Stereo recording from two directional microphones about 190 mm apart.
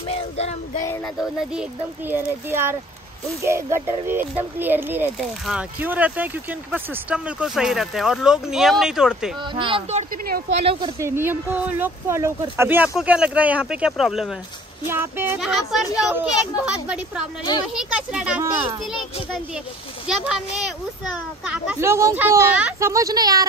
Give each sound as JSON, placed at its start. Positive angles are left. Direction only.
{"t": 0.1, "sound": "child singing", "side_deg": 35}
{"t": 1.0, "sound": "speech", "side_deg": -5}
{"t": 9.4, "sound": "speech", "side_deg": -25}
{"t": 11.0, "sound": "speech", "side_deg": -15}
{"t": 14.9, "sound": "speech", "side_deg": -10}
{"t": 20.1, "sound": "speech", "side_deg": 0}
{"t": 21.5, "sound": "speech", "side_deg": -15}